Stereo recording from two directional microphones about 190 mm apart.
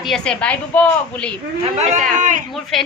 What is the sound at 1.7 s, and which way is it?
Speech, 35° right (ahead or behind).